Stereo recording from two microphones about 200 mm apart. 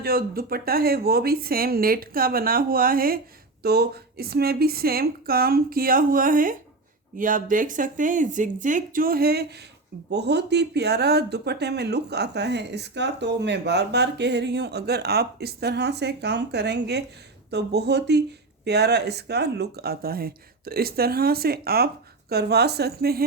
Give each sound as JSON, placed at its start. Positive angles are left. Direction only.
{"t": 0.0, "sound": "speech", "side_deg": -50}